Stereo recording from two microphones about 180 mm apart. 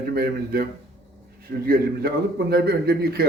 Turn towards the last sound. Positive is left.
turn(degrees=-60)  # may be behind; listen again after turning